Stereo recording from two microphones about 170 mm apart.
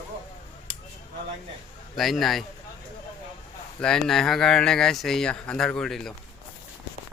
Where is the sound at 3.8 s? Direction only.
5° left (ahead or behind).